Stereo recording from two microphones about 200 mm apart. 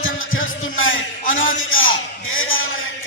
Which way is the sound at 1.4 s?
80° left.